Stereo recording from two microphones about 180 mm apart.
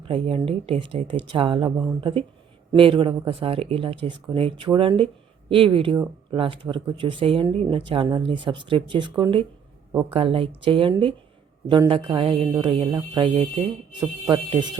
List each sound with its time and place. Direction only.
0.0 s speech: 30° right (ahead or behind)